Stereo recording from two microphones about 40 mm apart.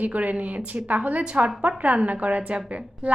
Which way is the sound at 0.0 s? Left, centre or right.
Right.